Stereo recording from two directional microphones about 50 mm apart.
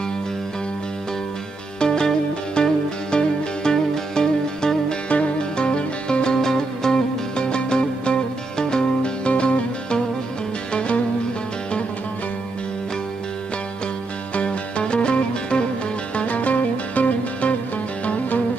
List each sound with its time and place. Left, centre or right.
1.8 s music: centre
14.3 s music: left